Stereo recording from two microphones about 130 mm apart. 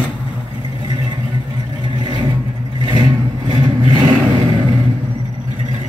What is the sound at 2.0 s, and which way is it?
Vehicle, 35° right (ahead or behind).